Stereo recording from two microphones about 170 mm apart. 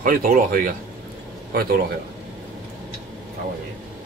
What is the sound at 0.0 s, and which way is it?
Speech, 55° right (ahead or behind).